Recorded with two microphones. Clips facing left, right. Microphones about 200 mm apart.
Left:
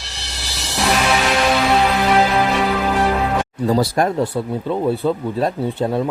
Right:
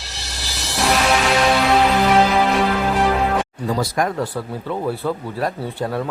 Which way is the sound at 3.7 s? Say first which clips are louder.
Left 5 dB; 35° left (ahead or behind).